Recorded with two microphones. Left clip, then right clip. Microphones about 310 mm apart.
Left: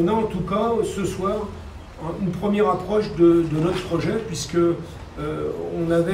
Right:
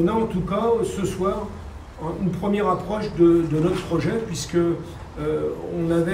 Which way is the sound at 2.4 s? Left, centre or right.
Centre.